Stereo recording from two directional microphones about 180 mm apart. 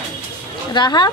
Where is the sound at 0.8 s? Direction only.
25° left (ahead or behind).